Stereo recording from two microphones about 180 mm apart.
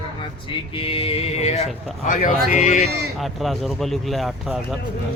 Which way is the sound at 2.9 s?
65° right (ahead or behind).